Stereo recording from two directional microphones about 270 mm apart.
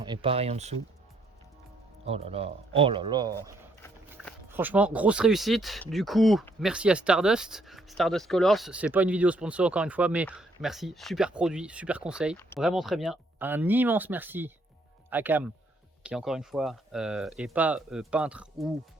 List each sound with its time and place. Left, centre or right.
0.0 s speech: centre
2.0 s speech: right
3.8 s a sound: centre
4.5 s speech: centre